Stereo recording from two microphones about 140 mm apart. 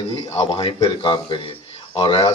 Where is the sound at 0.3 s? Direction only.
40° left (ahead or behind).